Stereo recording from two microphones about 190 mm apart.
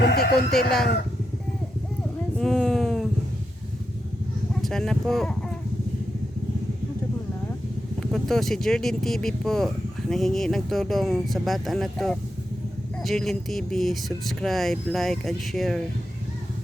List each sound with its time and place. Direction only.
0.0 s sheep: 60° left (ahead or behind)
2.4 s a sound: centre (ahead or behind)
4.6 s speech: centre (ahead or behind)
8.1 s speech: centre (ahead or behind)